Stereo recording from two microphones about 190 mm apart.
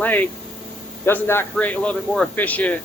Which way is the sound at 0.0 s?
10° left (ahead or behind).